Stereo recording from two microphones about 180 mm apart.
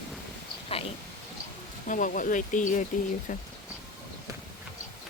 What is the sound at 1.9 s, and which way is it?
A woman's voice, 50° left (ahead or behind).